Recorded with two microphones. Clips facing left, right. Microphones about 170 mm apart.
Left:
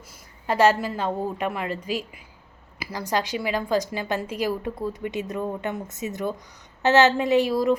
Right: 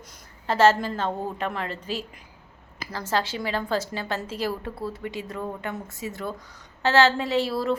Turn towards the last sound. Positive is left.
turn(degrees=15)  # may be behind; listen again after turning